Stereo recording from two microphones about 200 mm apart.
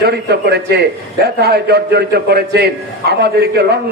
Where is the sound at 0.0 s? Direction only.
55° right (ahead or behind).